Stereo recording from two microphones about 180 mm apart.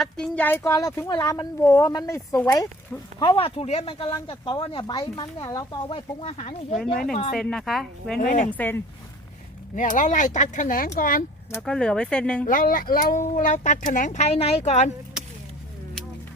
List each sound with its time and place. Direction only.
0.0 s speech: 5° left (ahead or behind)
3.2 s speech: 25° left (ahead or behind)
7.0 s speech: 50° left (ahead or behind)
7.3 s speech: 5° left (ahead or behind)
8.2 s speech: 45° left (ahead or behind)
8.4 s speech: 10° left (ahead or behind)
9.7 s speech: 45° left (ahead or behind)
11.5 s speech: 5° left (ahead or behind)
12.5 s speech: 50° left (ahead or behind)